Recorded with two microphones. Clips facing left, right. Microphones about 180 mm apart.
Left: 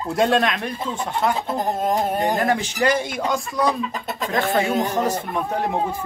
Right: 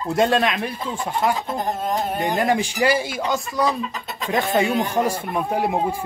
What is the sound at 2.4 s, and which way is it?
Speech, 15° right (ahead or behind).